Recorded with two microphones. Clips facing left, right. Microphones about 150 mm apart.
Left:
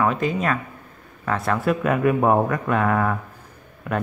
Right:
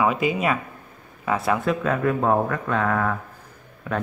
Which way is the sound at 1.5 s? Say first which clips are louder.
Left 2 dB; 5° left (ahead or behind).